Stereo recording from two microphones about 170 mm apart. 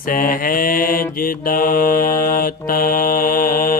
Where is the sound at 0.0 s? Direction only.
55° left (ahead or behind).